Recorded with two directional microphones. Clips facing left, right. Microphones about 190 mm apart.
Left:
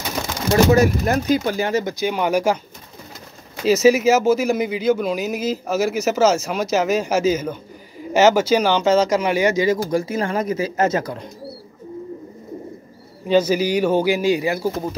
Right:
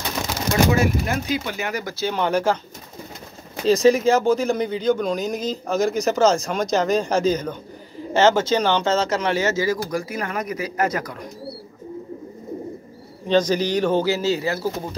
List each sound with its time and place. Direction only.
0.7 s speech: 40° left (ahead or behind)
1.7 s speech: 20° left (ahead or behind)
3.6 s speech: 5° left (ahead or behind); by 11.2 s 25° left (ahead or behind)
13.3 s speech: 10° left (ahead or behind)